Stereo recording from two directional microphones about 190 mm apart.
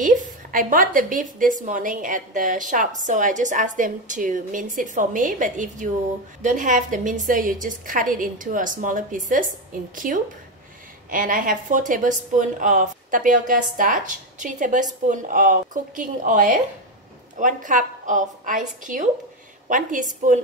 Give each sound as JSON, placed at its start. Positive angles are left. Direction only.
{"t": 0.0, "sound": "a woman's voice", "side_deg": -45}